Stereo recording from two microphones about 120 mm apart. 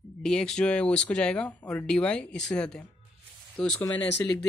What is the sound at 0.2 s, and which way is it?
Speech, 5° left (ahead or behind).